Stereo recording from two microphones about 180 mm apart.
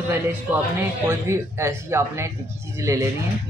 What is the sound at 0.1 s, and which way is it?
Speech, 10° right (ahead or behind).